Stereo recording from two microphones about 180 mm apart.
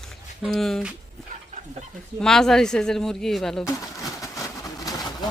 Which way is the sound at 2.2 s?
5° left (ahead or behind).